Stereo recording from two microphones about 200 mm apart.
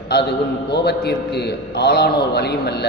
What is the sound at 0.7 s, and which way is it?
A man's voice, 55° left (ahead or behind).